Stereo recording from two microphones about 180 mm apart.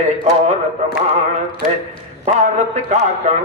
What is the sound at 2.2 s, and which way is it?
A man's voice, 40° right (ahead or behind).